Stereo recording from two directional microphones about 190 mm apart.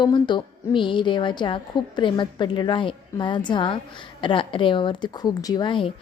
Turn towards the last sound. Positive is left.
turn(degrees=25)  # may be behind; listen again after turning